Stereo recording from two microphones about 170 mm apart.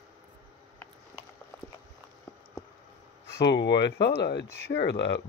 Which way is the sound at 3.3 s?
85° left.